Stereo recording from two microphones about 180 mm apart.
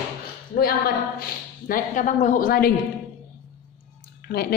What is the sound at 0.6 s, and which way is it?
A woman's voice, 55° left (ahead or behind).